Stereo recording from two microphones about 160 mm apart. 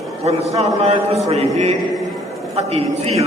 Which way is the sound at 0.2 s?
40° right (ahead or behind).